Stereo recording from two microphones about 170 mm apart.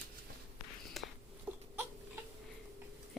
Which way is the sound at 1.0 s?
Centre (ahead or behind).